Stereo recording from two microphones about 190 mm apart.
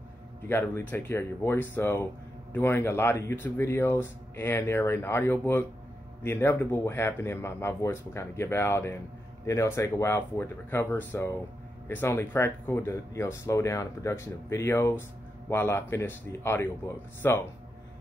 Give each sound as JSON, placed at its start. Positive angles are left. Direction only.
{"t": 0.5, "sound": "speech", "side_deg": 10}